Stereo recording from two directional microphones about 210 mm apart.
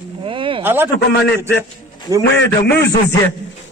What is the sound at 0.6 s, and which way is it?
Speech, 10° right (ahead or behind).